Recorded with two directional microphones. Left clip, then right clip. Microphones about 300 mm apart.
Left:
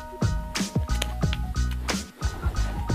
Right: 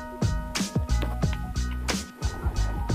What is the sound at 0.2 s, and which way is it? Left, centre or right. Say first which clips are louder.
Music: left 1 dB; centre.